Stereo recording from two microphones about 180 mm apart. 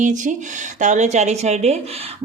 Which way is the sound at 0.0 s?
45° right (ahead or behind).